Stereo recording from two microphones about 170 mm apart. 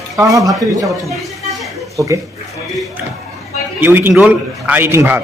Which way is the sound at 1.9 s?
20° right (ahead or behind).